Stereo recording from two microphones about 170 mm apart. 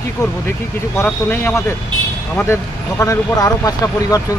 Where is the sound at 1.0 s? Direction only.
15° left (ahead or behind).